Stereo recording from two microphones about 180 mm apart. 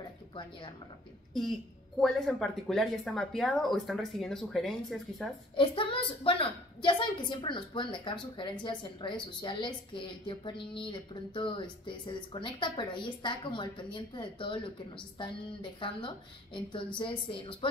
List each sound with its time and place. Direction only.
0.3 s speech: 25° left (ahead or behind)
2.0 s speech: centre (ahead or behind)
5.6 s a woman's voice: 30° left (ahead or behind)